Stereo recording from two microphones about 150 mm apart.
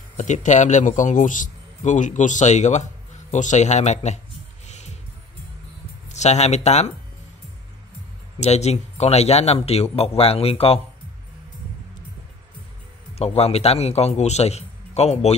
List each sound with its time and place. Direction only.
0.2 s a man's voice: 55° left (ahead or behind)
4.6 s music: 50° left (ahead or behind)
6.0 s speech: 50° left (ahead or behind)
8.4 s a man's voice: 45° left (ahead or behind)
13.2 s a man's voice: 45° left (ahead or behind)